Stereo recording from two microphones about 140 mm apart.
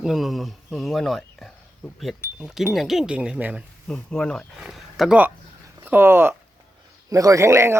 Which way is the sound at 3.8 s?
5° left (ahead or behind).